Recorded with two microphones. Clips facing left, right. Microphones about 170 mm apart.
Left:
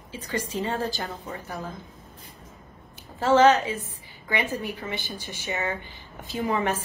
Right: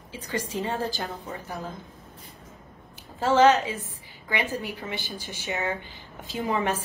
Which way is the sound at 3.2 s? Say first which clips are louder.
Left 1 dB; 15° right (ahead or behind).